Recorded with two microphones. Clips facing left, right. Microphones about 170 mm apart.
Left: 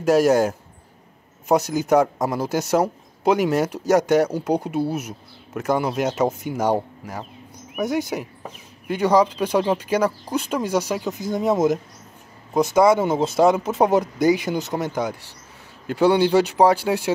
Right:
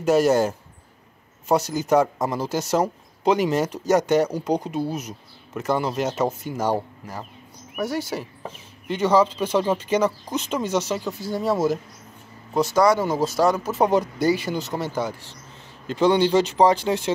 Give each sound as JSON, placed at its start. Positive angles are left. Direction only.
{"t": 0.1, "sound": "speech", "side_deg": 10}
{"t": 1.5, "sound": "speech", "side_deg": 10}
{"t": 7.8, "sound": "speech", "side_deg": 15}